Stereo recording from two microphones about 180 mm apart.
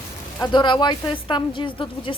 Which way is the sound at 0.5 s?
25° left (ahead or behind).